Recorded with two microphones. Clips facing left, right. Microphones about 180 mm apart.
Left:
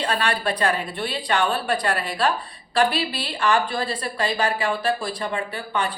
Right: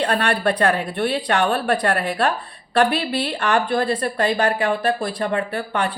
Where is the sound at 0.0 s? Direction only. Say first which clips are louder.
Right 4 dB; 60° right (ahead or behind).